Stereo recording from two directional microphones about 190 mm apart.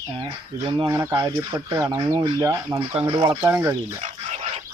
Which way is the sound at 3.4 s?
10° right (ahead or behind).